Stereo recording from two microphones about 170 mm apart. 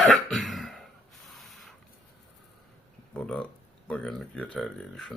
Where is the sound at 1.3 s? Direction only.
Centre (ahead or behind).